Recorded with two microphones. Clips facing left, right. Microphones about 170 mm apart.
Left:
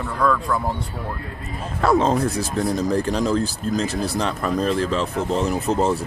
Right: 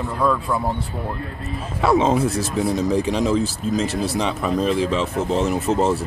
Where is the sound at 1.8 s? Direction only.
5° right (ahead or behind).